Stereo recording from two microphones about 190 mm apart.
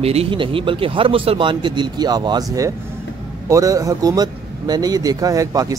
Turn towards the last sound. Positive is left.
turn(degrees=-20)  # may be behind; listen again after turning